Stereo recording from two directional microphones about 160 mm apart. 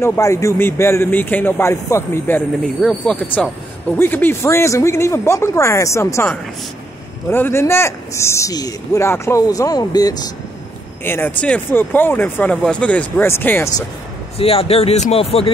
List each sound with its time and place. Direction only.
0.0 s speech: 15° left (ahead or behind)
2.8 s speech: 5° left (ahead or behind); by 10.3 s 25° left (ahead or behind)
11.1 s speech: 15° left (ahead or behind)
14.4 s speech: 40° left (ahead or behind)